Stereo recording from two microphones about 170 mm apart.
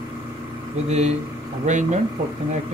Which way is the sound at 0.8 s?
40° right (ahead or behind).